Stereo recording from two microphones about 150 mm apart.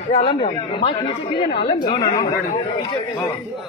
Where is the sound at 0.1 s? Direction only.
40° left (ahead or behind).